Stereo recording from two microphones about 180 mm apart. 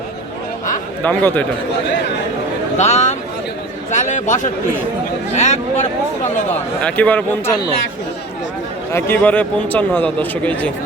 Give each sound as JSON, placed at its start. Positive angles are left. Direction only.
{"t": 1.0, "sound": "speech", "side_deg": 10}
{"t": 2.7, "sound": "a man's voice", "side_deg": 40}
{"t": 6.8, "sound": "speech", "side_deg": 10}
{"t": 8.9, "sound": "speech", "side_deg": 15}